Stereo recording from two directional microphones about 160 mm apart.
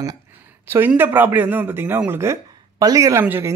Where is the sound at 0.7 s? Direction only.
15° right (ahead or behind).